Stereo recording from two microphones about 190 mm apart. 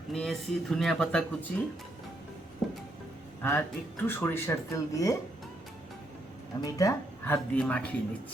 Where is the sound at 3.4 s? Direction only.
10° left (ahead or behind).